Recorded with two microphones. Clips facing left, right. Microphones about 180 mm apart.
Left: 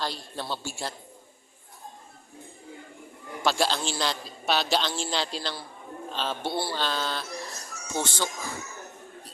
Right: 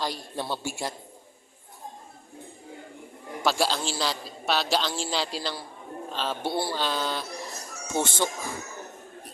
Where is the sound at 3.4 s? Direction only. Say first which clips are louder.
Even; 5° right (ahead or behind).